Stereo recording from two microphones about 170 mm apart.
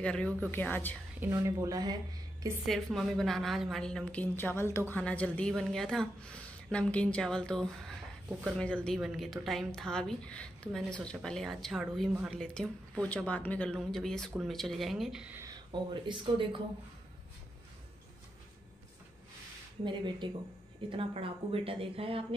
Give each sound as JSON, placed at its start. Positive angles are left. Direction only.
{"t": 0.0, "sound": "speech", "side_deg": 5}
{"t": 1.2, "sound": "speech", "side_deg": -20}
{"t": 2.6, "sound": "a woman's voice", "side_deg": 0}
{"t": 15.4, "sound": "speech", "side_deg": -25}
{"t": 19.8, "sound": "a woman's voice", "side_deg": -25}